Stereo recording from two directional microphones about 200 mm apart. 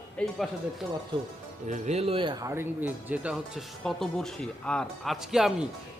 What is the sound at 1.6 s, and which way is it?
Speech, 35° right (ahead or behind).